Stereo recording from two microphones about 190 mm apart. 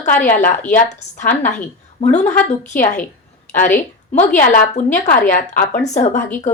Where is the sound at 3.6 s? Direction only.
40° left (ahead or behind).